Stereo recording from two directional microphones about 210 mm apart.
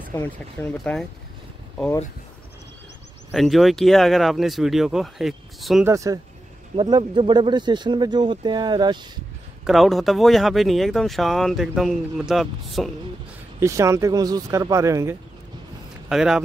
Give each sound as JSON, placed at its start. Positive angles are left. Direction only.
{"t": 0.1, "sound": "speech", "side_deg": 10}
{"t": 3.3, "sound": "speech", "side_deg": 0}
{"t": 5.9, "sound": "speech", "side_deg": -15}
{"t": 9.7, "sound": "speech", "side_deg": 0}
{"t": 13.6, "sound": "speech", "side_deg": -15}
{"t": 16.1, "sound": "speech", "side_deg": 0}